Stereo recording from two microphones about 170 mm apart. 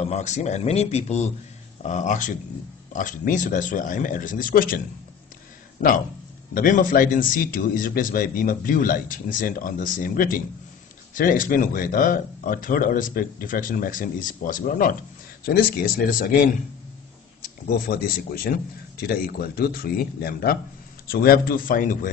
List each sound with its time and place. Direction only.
0.0 s speech: 40° left (ahead or behind)
6.5 s speech: 55° left (ahead or behind)
17.8 s speech: 65° left (ahead or behind)